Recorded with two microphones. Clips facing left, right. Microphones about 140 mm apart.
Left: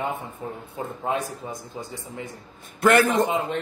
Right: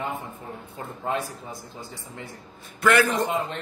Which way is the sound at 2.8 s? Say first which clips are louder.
Left 2 dB; 45° left (ahead or behind).